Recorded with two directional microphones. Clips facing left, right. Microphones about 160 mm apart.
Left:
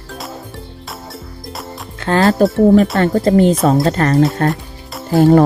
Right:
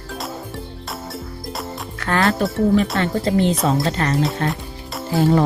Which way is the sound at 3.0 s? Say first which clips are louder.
Left 7 dB; 45° left (ahead or behind).